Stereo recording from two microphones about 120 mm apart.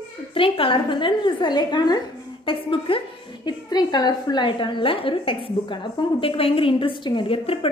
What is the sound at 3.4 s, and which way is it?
A woman's voice, 35° left (ahead or behind).